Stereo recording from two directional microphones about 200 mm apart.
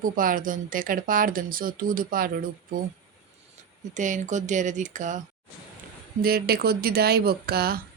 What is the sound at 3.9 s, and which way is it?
Speech, 40° right (ahead or behind).